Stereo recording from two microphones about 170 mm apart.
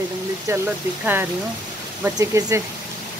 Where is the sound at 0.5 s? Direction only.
15° right (ahead or behind).